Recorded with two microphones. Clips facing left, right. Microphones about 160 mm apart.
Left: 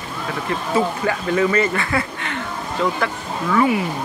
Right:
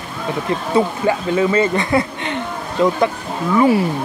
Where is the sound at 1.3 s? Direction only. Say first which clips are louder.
Even; 15° right (ahead or behind).